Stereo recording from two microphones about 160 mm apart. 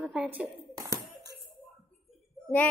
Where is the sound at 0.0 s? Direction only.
5° right (ahead or behind).